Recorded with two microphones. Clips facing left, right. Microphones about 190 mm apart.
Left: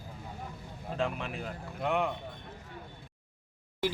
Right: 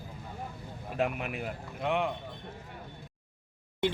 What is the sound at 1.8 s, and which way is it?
Speech, centre (ahead or behind).